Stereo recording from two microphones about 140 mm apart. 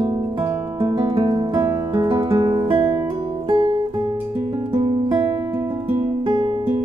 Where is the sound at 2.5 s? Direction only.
20° right (ahead or behind).